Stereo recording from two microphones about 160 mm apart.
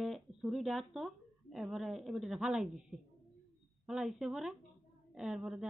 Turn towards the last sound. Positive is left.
turn(degrees=-5)  # may be behind; listen again after turning